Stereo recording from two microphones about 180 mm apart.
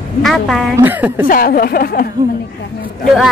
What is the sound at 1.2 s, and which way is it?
Speech, 55° left (ahead or behind).